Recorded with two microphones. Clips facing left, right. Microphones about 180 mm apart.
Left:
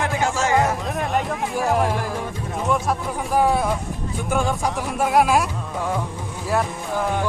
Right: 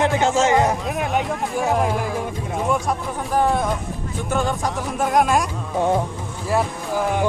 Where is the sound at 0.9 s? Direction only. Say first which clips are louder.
Right 1 dB; centre (ahead or behind).